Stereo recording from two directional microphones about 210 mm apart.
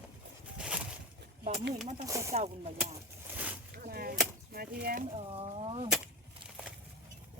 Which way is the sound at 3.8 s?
45° right (ahead or behind).